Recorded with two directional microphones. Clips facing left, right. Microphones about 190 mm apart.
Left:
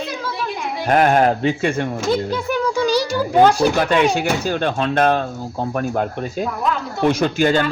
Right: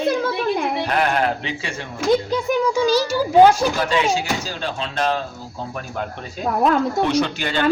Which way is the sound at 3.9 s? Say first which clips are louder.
Left 4 dB; 60° left (ahead or behind).